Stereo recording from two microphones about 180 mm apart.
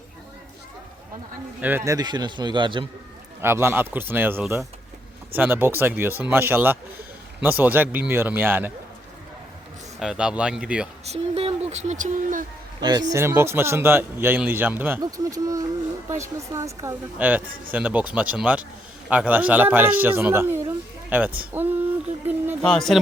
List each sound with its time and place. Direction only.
1.6 s a man's voice: 15° right (ahead or behind)
3.4 s speech: 15° right (ahead or behind)
10.0 s a man's voice: 5° right (ahead or behind)
11.0 s speech: 35° right (ahead or behind)
12.8 s a man's voice: 25° right (ahead or behind)
21.5 s a sound: 10° right (ahead or behind)
22.9 s a man's voice: centre (ahead or behind)